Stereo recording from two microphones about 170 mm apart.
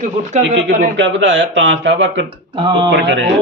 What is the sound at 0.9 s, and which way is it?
Speech, 90° right.